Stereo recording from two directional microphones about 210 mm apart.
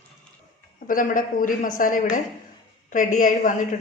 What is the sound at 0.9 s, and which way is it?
A woman's voice, 40° left (ahead or behind).